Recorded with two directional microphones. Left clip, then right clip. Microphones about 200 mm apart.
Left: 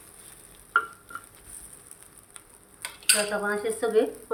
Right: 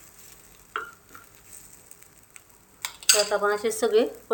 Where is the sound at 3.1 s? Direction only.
55° right (ahead or behind).